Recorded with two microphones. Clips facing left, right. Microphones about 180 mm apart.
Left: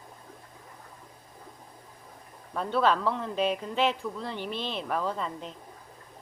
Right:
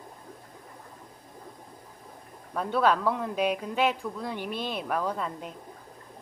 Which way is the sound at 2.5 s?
10° right (ahead or behind).